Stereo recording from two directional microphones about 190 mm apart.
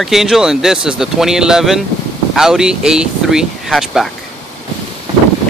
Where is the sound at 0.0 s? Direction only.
Centre (ahead or behind).